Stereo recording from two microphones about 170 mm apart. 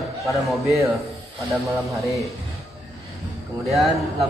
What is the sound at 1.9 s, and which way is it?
Speech, centre (ahead or behind).